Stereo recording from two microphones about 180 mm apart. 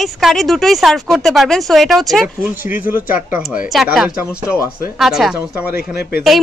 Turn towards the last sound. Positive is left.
turn(degrees=60)  # may be behind; listen again after turning